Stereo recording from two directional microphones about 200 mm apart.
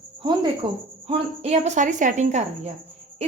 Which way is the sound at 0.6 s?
25° right (ahead or behind).